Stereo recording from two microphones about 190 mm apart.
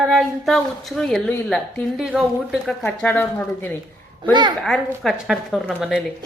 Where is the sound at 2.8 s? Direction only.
10° left (ahead or behind).